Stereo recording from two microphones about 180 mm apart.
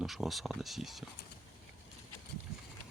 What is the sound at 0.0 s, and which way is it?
Speech, centre (ahead or behind).